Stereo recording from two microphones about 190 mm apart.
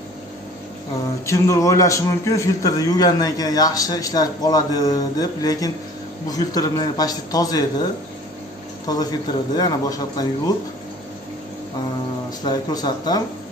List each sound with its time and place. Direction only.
1.2 s a man's voice: 15° left (ahead or behind)
8.9 s a man's voice: 20° left (ahead or behind)
12.4 s a man's voice: 20° left (ahead or behind)